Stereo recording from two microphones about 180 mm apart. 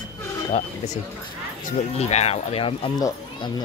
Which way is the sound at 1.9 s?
35° left (ahead or behind).